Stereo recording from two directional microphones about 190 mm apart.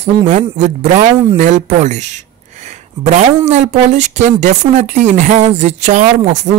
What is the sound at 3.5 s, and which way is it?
Speech, 35° right (ahead or behind).